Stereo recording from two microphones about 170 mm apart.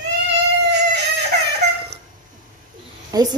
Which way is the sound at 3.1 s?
20° right (ahead or behind).